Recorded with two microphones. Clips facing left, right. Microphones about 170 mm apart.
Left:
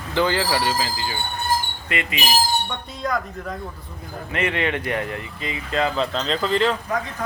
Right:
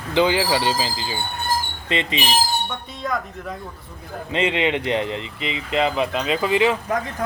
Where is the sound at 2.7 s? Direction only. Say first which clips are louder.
Left 1 dB; centre (ahead or behind).